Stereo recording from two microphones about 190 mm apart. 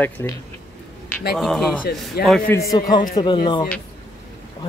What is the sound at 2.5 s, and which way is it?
Speech, 15° left (ahead or behind).